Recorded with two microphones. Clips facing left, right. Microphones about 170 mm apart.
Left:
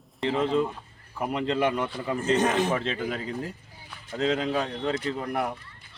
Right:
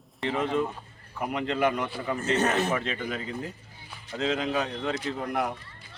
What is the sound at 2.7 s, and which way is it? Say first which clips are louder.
Speech: left 2 dB; 30° left (ahead or behind).